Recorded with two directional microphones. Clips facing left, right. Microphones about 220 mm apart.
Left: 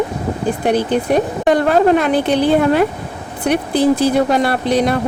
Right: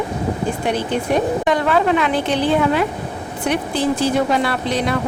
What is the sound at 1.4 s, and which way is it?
Speech, 40° left (ahead or behind).